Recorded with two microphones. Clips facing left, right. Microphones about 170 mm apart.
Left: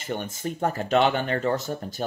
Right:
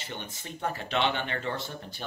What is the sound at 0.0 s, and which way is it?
Speech, 45° left (ahead or behind).